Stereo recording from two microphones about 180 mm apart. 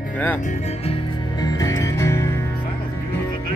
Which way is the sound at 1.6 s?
15° left (ahead or behind).